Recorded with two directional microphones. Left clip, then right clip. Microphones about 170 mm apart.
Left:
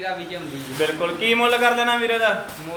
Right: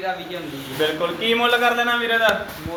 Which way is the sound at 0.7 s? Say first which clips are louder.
Right 1 dB; 5° right (ahead or behind).